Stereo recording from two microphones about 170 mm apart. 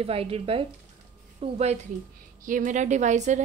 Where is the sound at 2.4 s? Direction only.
50° right (ahead or behind).